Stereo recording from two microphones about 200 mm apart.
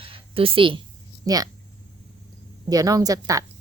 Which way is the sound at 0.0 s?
30° right (ahead or behind).